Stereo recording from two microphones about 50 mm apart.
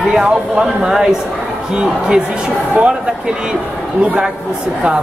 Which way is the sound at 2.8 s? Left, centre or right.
Right.